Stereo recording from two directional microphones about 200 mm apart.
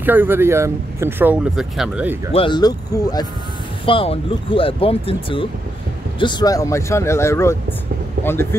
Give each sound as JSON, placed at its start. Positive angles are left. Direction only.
{"t": 0.0, "sound": "speech", "side_deg": -10}
{"t": 2.3, "sound": "speech", "side_deg": 25}